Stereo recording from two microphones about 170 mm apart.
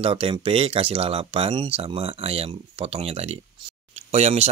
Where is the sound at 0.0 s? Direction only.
35° right (ahead or behind).